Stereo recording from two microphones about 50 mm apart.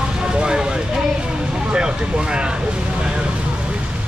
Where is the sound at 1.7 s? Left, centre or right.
Centre.